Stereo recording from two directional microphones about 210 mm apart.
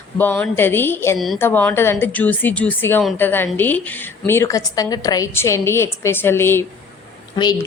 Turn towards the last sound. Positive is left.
turn(degrees=20)  # may be behind; listen again after turning